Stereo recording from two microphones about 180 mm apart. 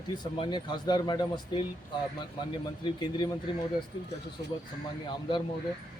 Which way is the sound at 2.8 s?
25° left (ahead or behind).